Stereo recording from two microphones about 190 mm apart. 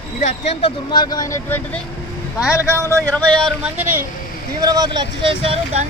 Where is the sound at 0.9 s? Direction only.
20° left (ahead or behind).